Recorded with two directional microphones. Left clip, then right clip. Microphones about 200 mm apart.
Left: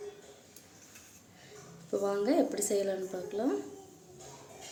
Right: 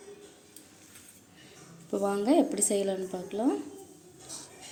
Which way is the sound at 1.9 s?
5° right (ahead or behind).